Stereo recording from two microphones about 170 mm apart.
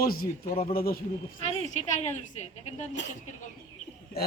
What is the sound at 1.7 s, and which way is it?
Speech, 45° left (ahead or behind).